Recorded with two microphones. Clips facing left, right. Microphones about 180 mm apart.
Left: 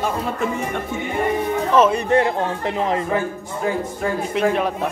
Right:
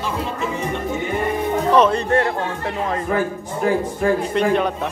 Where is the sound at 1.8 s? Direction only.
10° left (ahead or behind).